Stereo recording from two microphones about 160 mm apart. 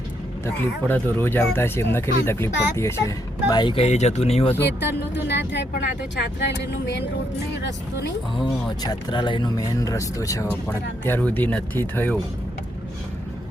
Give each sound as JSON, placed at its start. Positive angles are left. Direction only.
{"t": 0.4, "sound": "speech", "side_deg": 15}
{"t": 3.8, "sound": "speech", "side_deg": 45}
{"t": 5.1, "sound": "speech", "side_deg": 90}
{"t": 8.8, "sound": "speech", "side_deg": 25}